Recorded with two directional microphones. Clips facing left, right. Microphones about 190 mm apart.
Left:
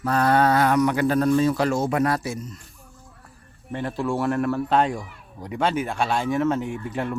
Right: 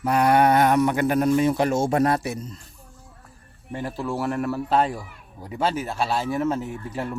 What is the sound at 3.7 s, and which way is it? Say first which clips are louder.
Speech: left 2 dB; 5° right (ahead or behind).